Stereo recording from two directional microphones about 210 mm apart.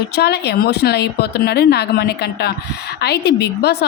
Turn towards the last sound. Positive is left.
turn(degrees=50)  # may be behind; listen again after turning